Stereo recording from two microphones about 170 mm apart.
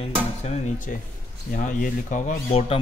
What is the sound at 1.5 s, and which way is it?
Speech, 55° left (ahead or behind).